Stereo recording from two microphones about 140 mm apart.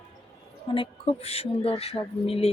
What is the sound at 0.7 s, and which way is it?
Speech, 40° left (ahead or behind).